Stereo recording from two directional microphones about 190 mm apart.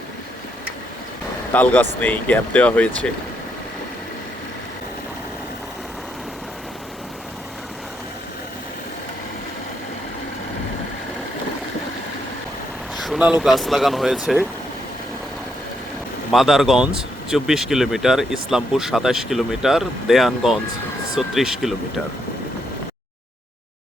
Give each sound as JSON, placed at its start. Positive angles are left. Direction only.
{"t": 1.5, "sound": "speech", "side_deg": 10}
{"t": 13.0, "sound": "vehicle", "side_deg": -5}
{"t": 13.4, "sound": "speech", "side_deg": 0}
{"t": 16.3, "sound": "speech", "side_deg": 0}